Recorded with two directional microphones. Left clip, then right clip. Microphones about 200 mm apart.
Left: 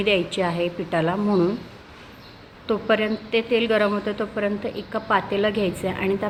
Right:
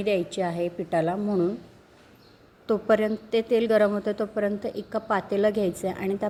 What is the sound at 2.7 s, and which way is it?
A woman's voice, 30° right (ahead or behind).